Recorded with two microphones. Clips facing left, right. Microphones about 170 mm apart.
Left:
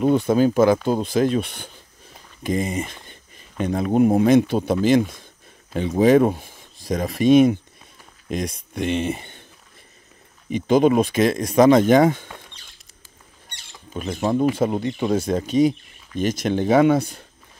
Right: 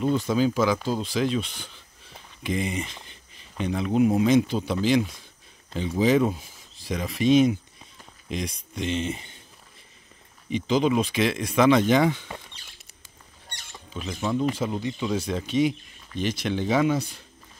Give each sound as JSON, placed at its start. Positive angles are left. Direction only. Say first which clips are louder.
{"t": 0.0, "sound": "speech", "louder": "left 6 dB", "side_deg": 55}
{"t": 2.4, "sound": "a sound", "louder": "left 4 dB", "side_deg": 45}
{"t": 3.9, "sound": "speech", "louder": "left 4 dB", "side_deg": 50}
{"t": 10.5, "sound": "speech", "louder": "left 6 dB", "side_deg": 50}
{"t": 13.9, "sound": "speech", "louder": "left 5 dB", "side_deg": 45}